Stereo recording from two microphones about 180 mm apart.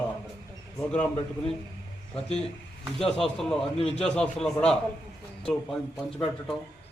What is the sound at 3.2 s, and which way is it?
Speech, centre (ahead or behind).